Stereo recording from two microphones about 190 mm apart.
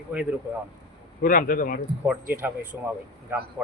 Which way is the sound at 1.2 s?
45° left (ahead or behind).